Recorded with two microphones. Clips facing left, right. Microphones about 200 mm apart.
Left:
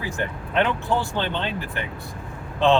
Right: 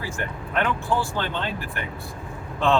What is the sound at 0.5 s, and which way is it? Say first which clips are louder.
Speech: left 2 dB; 20° left (ahead or behind).